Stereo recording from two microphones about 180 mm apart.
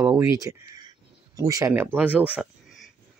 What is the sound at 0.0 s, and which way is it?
Speech, 20° right (ahead or behind).